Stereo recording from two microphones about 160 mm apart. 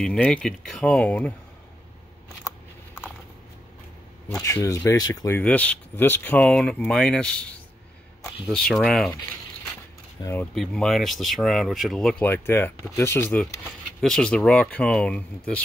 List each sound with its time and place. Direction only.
0.0 s speech: 5° left (ahead or behind)
4.3 s speech: 20° left (ahead or behind)
5.4 s speech: 10° left (ahead or behind)
8.5 s speech: 5° left (ahead or behind)
10.2 s speech: 10° left (ahead or behind)
10.5 s speech: centre (ahead or behind)
13.7 s speech: 5° left (ahead or behind)